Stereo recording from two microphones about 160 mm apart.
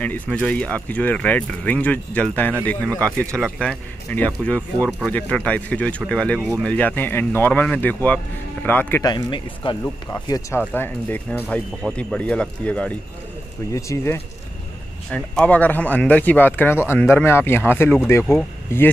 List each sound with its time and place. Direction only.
0.0 s speech: 10° left (ahead or behind)
9.0 s speech: 30° left (ahead or behind)
10.6 s speech: 10° left (ahead or behind)
13.7 s speech: 20° left (ahead or behind)